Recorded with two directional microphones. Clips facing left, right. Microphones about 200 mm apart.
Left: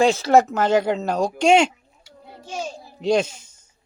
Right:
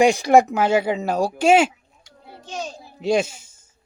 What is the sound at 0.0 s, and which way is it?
Speech, 15° right (ahead or behind).